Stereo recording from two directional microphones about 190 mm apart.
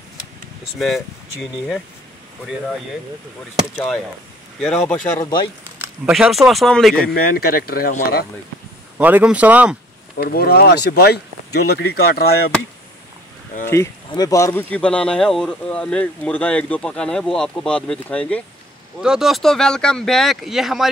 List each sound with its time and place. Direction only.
0.7 s speech: centre (ahead or behind)
5.2 s speech: 25° left (ahead or behind)
5.8 s speech: 5° right (ahead or behind)
7.3 s speech: 50° left (ahead or behind)
8.9 s speech: 10° right (ahead or behind)
10.1 s speech: 55° left (ahead or behind)
13.7 s speech: 20° left (ahead or behind); by 20.9 s centre (ahead or behind)